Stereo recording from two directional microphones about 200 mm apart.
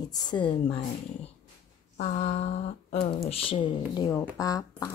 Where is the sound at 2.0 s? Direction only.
35° left (ahead or behind).